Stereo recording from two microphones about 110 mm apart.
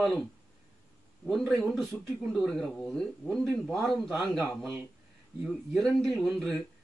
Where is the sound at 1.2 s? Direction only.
Centre (ahead or behind).